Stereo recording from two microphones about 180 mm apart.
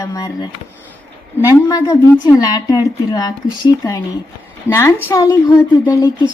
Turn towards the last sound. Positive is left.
turn(degrees=20)  # may be behind; listen again after turning